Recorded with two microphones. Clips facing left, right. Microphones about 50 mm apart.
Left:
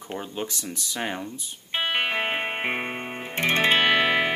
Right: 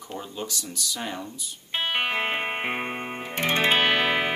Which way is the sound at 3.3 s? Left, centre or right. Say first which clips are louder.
Left 1 dB; left.